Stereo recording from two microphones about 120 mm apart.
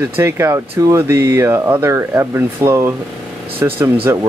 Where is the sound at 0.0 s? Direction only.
20° right (ahead or behind).